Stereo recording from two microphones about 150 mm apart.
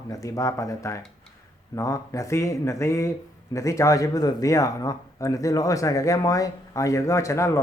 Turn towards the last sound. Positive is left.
turn(degrees=20)  # may be behind; listen again after turning